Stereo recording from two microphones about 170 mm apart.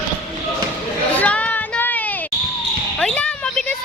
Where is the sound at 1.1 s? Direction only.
10° left (ahead or behind).